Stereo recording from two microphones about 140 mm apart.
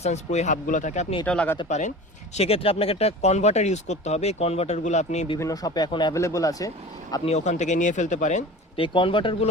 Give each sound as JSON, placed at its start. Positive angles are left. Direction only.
{"t": 0.0, "sound": "speech", "side_deg": 55}
{"t": 1.2, "sound": "speech", "side_deg": 10}
{"t": 2.3, "sound": "speech", "side_deg": 45}
{"t": 5.4, "sound": "speech", "side_deg": 25}
{"t": 7.3, "sound": "speech", "side_deg": 55}
{"t": 8.7, "sound": "speech", "side_deg": 40}